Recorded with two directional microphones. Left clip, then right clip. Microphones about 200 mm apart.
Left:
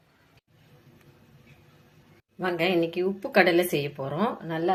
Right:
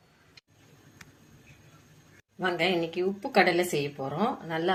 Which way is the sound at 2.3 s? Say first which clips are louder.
Left 2 dB; 10° left (ahead or behind).